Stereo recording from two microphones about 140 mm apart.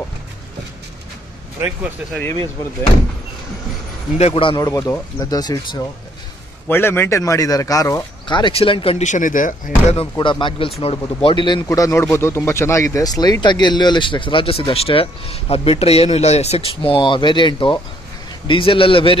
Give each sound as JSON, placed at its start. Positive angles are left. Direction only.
{"t": 4.2, "sound": "speech", "side_deg": 40}
{"t": 6.7, "sound": "speech", "side_deg": 15}
{"t": 9.0, "sound": "speech", "side_deg": 65}
{"t": 10.1, "sound": "speech", "side_deg": 30}